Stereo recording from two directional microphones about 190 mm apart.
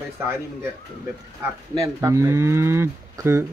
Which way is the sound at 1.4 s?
15° right (ahead or behind).